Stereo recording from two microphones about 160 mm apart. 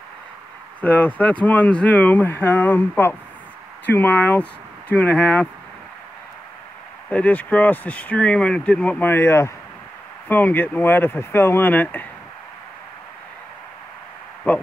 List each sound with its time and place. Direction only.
0.7 s speech: 10° left (ahead or behind)
7.1 s speech: 10° left (ahead or behind)
14.5 s speech: 10° left (ahead or behind)